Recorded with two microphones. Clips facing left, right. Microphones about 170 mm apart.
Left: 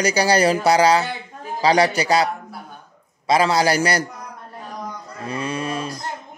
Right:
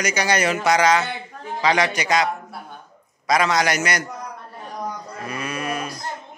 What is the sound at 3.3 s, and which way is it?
Speech, 30° left (ahead or behind).